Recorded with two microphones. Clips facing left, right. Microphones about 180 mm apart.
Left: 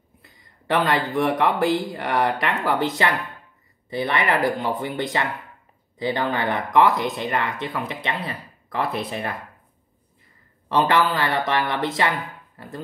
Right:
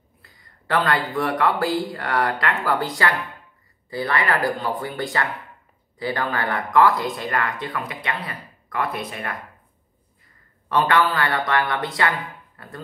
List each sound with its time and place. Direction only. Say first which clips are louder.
0.2 s speech: left 1 dB; 20° left (ahead or behind)
10.7 s a man's voice: even; 20° left (ahead or behind)